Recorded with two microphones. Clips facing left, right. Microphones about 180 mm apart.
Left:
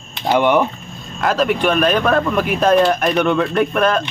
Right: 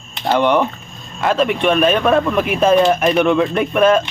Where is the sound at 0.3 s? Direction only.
10° left (ahead or behind).